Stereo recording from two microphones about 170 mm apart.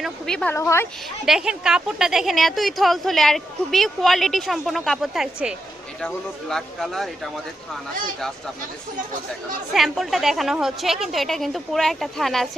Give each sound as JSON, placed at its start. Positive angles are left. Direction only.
{"t": 0.0, "sound": "a woman's voice", "side_deg": 5}
{"t": 0.5, "sound": "speech", "side_deg": 15}
{"t": 1.2, "sound": "a woman's voice", "side_deg": -5}
{"t": 9.7, "sound": "a woman's voice", "side_deg": 0}